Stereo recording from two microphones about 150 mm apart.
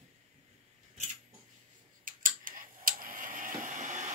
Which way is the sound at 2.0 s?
65° right (ahead or behind).